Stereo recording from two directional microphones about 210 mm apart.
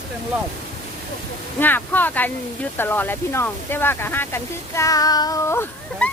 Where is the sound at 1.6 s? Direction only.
10° left (ahead or behind).